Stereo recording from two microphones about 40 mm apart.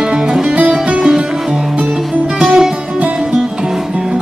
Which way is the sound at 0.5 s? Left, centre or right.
Right.